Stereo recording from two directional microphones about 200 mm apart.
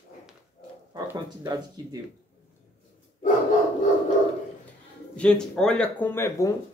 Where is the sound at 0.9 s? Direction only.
20° right (ahead or behind).